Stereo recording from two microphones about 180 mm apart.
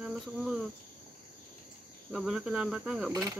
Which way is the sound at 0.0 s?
5° right (ahead or behind).